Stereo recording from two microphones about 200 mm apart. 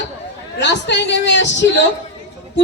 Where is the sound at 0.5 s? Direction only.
60° left (ahead or behind).